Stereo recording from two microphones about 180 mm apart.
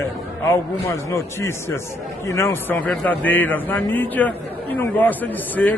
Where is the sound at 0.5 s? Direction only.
15° left (ahead or behind).